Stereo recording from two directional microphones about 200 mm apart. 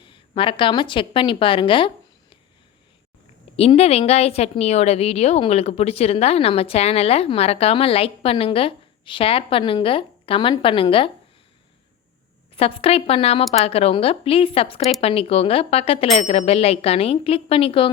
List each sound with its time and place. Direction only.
0.0 s a woman's voice: 25° left (ahead or behind)
3.5 s a woman's voice: 30° left (ahead or behind)
12.5 s a woman's voice: 30° left (ahead or behind)